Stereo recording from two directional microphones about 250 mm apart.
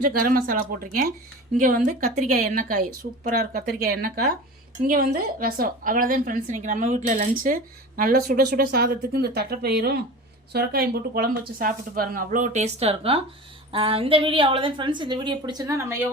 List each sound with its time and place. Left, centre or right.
0.0 s a woman's voice: right; by 16.0 s centre